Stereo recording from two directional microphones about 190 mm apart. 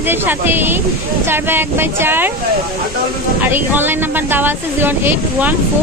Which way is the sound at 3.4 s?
10° right (ahead or behind).